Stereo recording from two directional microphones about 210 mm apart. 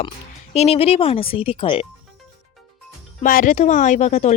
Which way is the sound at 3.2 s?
40° left (ahead or behind).